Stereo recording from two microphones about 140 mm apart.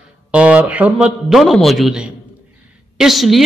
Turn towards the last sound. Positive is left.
turn(degrees=0)  # may be behind; listen again after turning